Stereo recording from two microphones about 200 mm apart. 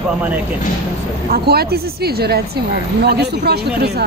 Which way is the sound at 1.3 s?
50° right (ahead or behind).